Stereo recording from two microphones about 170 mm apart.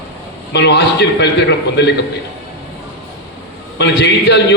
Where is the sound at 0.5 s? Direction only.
85° left.